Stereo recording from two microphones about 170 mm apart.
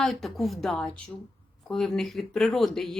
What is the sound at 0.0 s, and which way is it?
Speech, centre (ahead or behind).